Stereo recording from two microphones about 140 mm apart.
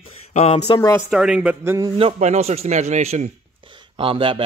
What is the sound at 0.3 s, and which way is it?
Speech, 55° left (ahead or behind).